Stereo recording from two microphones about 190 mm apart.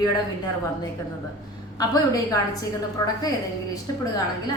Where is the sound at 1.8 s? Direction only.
20° left (ahead or behind).